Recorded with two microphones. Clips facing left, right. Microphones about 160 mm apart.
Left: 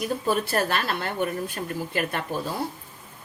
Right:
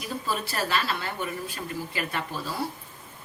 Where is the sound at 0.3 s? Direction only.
55° left (ahead or behind).